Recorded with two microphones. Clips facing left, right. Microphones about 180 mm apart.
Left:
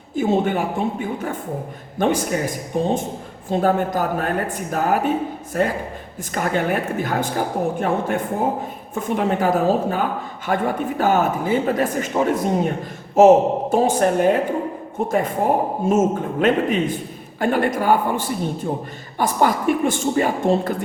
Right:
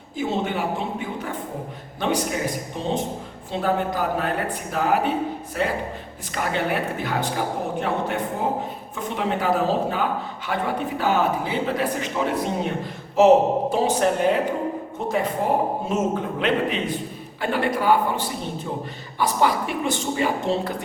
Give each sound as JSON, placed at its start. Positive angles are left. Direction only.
{"t": 0.2, "sound": "a man's voice", "side_deg": 50}
{"t": 15.9, "sound": "a man's voice", "side_deg": 45}